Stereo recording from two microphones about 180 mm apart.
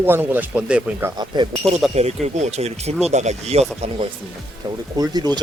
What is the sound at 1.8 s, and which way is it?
Speech, centre (ahead or behind).